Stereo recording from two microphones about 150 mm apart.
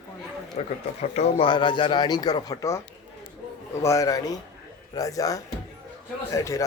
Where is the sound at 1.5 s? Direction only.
30° left (ahead or behind).